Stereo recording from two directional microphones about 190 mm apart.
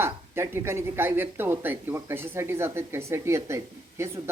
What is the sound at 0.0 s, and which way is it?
Speech, 15° right (ahead or behind).